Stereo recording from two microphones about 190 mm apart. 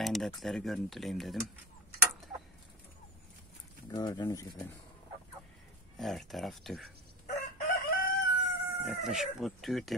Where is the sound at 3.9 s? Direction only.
20° left (ahead or behind).